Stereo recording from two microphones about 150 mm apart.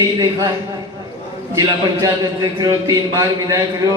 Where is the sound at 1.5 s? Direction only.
25° right (ahead or behind).